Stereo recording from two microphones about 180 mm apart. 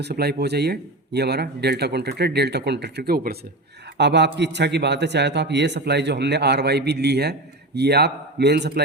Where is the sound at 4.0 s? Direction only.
70° right (ahead or behind).